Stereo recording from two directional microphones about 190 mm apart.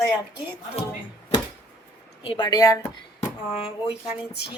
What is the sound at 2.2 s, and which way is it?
Speech, 25° left (ahead or behind).